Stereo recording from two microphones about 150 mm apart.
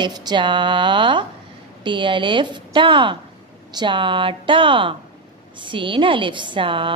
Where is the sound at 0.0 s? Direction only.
30° right (ahead or behind).